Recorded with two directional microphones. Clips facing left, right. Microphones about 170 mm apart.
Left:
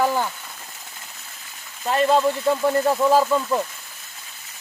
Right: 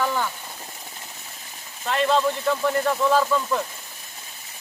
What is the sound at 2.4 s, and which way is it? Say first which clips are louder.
Speech: left 3 dB; 35° left (ahead or behind).